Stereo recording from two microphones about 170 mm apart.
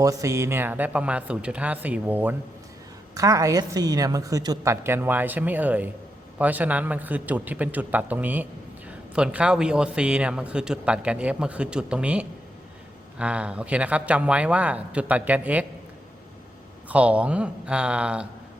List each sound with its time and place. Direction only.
0.0 s a man's voice: 20° right (ahead or behind)
16.9 s a man's voice: 10° right (ahead or behind)